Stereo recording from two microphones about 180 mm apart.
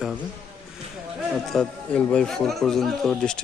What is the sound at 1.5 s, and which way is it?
A man's voice, 5° left (ahead or behind).